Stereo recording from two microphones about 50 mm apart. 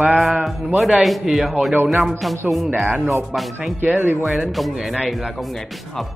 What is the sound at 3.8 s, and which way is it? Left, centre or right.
Speech, right.